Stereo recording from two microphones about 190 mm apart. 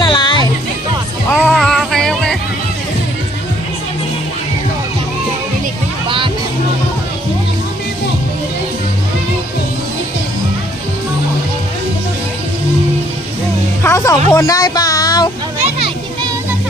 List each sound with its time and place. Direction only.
0.0 s music: 25° left (ahead or behind)
1.5 s music: centre (ahead or behind)
6.1 s music: 25° right (ahead or behind)
13.8 s music: 15° left (ahead or behind)
14.3 s a sound: 20° left (ahead or behind)
15.6 s children playing: 30° right (ahead or behind)